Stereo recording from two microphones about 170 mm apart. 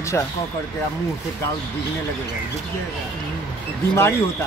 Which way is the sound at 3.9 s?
15° left (ahead or behind).